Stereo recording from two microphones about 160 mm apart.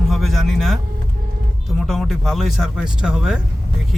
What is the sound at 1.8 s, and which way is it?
Speech, centre (ahead or behind).